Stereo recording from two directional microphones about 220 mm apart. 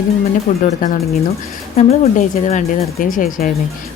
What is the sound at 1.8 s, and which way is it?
Speech, 30° left (ahead or behind).